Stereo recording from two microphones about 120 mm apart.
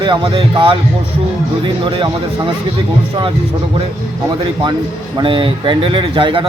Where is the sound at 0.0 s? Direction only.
40° right (ahead or behind).